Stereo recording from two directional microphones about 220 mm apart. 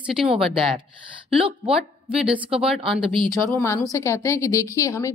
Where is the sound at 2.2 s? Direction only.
25° right (ahead or behind).